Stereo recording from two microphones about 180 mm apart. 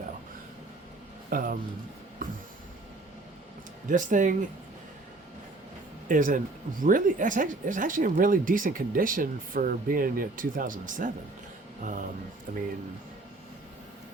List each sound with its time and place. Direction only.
1.3 s speech: 50° right (ahead or behind)
3.8 s speech: 45° right (ahead or behind)
6.1 s speech: 50° right (ahead or behind)